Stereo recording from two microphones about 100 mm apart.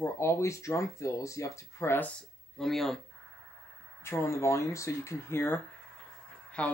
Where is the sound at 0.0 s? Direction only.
30° left (ahead or behind).